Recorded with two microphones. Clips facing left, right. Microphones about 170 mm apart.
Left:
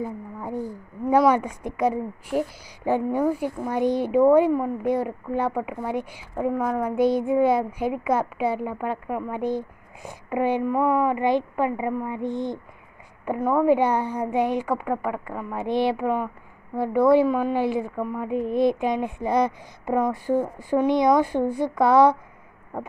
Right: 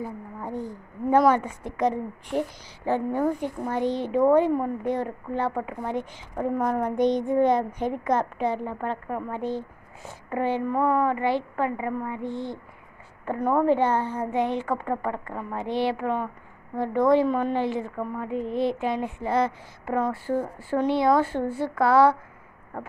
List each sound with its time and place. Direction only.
0.0 s a sound: 10° left (ahead or behind)
1.1 s a child's voice: 10° left (ahead or behind)
13.4 s a woman's voice: centre (ahead or behind)
13.7 s a child's voice: 15° left (ahead or behind)